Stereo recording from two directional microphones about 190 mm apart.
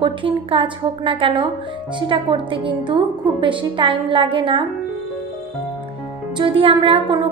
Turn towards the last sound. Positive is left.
turn(degrees=-30)  # may be behind; listen again after turning